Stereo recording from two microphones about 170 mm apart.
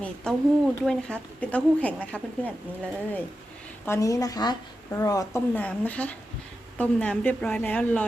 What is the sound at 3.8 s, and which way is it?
A woman's voice, 15° left (ahead or behind).